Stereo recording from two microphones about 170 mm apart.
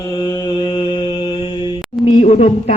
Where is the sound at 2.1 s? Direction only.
40° left (ahead or behind).